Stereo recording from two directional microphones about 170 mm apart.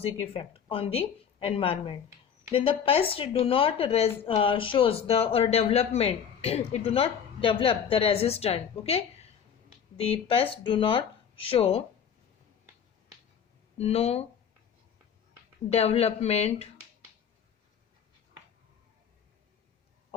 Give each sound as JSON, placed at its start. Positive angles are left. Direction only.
{"t": 0.0, "sound": "speech", "side_deg": 35}
{"t": 13.7, "sound": "speech", "side_deg": 35}
{"t": 15.7, "sound": "speech", "side_deg": 40}